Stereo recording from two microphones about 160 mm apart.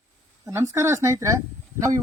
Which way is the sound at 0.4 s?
20° right (ahead or behind).